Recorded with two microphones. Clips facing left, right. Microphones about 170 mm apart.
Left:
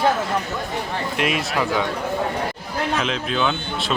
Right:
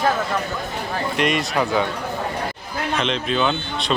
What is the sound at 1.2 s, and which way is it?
Speech, centre (ahead or behind).